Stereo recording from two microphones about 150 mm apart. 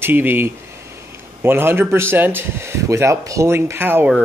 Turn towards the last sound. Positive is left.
turn(degrees=-15)  # may be behind; listen again after turning